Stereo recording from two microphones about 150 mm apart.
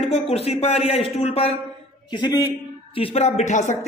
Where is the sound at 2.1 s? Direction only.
30° left (ahead or behind).